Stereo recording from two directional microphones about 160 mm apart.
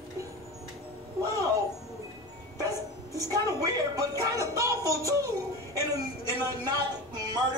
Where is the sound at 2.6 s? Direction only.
20° right (ahead or behind).